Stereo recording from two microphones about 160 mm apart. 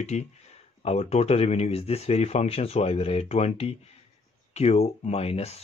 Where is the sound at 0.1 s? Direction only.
45° left (ahead or behind).